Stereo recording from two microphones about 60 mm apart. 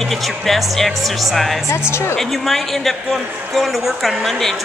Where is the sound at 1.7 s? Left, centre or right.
Left.